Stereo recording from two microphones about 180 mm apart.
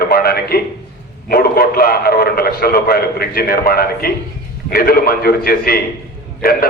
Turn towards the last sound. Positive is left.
turn(degrees=55)  # may be behind; listen again after turning